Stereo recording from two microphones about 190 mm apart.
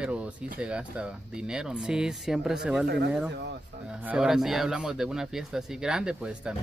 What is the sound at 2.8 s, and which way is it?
Speech, 60° right (ahead or behind).